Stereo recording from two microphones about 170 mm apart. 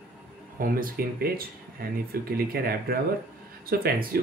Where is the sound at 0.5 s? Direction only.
55° right (ahead or behind).